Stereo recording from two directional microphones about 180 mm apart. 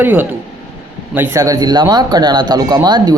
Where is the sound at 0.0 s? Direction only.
10° right (ahead or behind).